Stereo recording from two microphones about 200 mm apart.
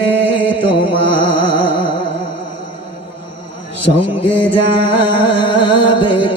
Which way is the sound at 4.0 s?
25° left (ahead or behind).